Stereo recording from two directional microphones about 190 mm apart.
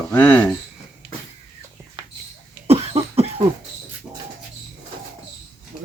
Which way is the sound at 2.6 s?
30° right (ahead or behind).